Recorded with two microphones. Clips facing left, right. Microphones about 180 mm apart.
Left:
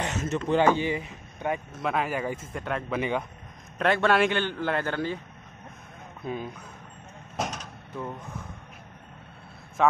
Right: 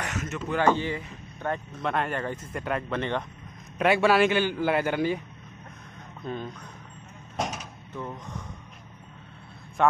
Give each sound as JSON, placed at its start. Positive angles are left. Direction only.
{"t": 0.0, "sound": "a sound", "side_deg": 30}
{"t": 0.7, "sound": "speech", "side_deg": 15}
{"t": 3.7, "sound": "a man's voice", "side_deg": -5}
{"t": 6.2, "sound": "speech", "side_deg": 5}
{"t": 7.3, "sound": "cupboard open or close", "side_deg": 0}
{"t": 9.8, "sound": "a man's voice", "side_deg": 0}